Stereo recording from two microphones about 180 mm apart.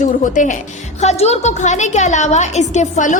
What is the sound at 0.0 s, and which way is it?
A woman's voice, 45° left (ahead or behind).